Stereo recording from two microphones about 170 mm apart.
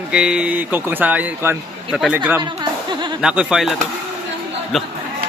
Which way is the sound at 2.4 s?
25° right (ahead or behind).